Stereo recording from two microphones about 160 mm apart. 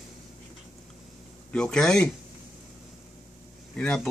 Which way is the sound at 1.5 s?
5° left (ahead or behind).